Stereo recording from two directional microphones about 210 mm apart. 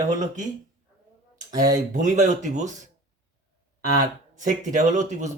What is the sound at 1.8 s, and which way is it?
Speech, 35° right (ahead or behind).